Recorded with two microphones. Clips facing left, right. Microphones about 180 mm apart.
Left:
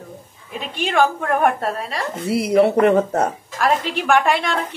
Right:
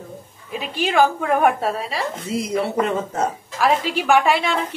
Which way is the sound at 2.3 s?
65° left (ahead or behind).